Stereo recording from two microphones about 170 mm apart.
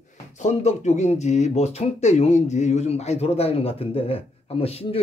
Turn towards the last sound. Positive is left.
turn(degrees=35)  # may be behind; listen again after turning